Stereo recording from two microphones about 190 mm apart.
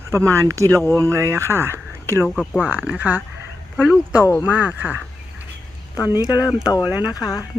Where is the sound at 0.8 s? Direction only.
10° left (ahead or behind).